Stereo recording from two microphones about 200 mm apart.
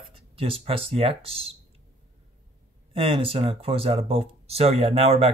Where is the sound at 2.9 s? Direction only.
25° right (ahead or behind).